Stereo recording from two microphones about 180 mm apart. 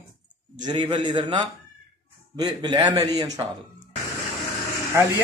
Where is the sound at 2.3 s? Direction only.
25° right (ahead or behind).